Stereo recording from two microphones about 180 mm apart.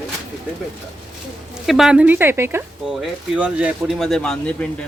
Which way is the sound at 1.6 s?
Centre (ahead or behind).